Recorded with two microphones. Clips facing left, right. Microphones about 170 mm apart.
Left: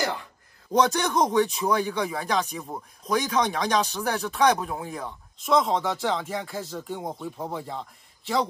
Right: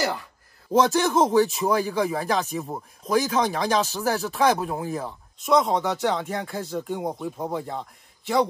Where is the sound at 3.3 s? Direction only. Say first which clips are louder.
Right 1 dB; centre (ahead or behind).